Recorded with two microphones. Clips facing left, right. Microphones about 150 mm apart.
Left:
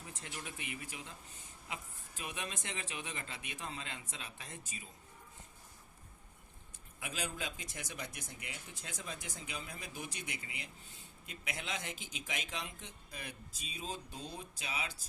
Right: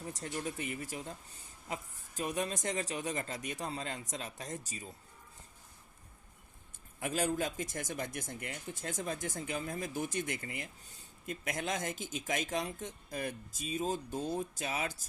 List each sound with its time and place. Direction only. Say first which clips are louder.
0.0 s speech: right 9 dB; 40° right (ahead or behind)
7.0 s speech: right 9 dB; 45° right (ahead or behind)